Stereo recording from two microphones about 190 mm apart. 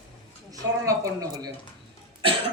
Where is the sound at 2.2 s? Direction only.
30° right (ahead or behind).